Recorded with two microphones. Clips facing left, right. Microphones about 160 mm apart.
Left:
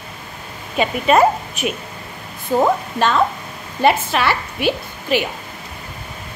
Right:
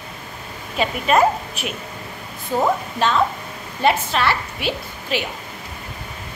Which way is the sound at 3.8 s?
5° left (ahead or behind).